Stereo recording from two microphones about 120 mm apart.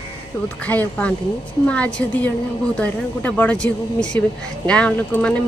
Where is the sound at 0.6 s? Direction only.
10° left (ahead or behind).